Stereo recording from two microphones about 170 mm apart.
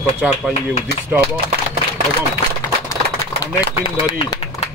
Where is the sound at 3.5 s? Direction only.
20° left (ahead or behind).